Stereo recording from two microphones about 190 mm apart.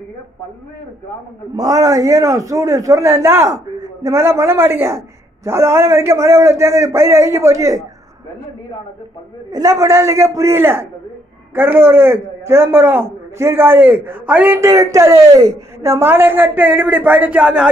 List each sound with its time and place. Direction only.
1.6 s a man's voice: 20° right (ahead or behind)
9.5 s a man's voice: 20° right (ahead or behind)